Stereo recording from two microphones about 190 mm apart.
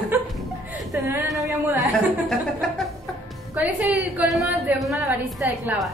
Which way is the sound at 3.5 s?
10° right (ahead or behind).